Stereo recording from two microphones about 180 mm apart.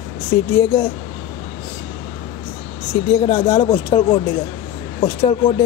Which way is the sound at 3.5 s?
30° left (ahead or behind).